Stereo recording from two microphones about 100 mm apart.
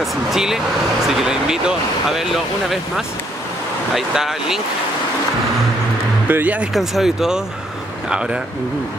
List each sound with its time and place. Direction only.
0.0 s speech: centre (ahead or behind)
3.9 s speech: 5° right (ahead or behind)
6.2 s speech: 15° right (ahead or behind)
6.7 s speech: 5° right (ahead or behind)